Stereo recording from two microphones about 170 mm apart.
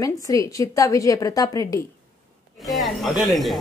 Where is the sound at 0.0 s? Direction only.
20° left (ahead or behind).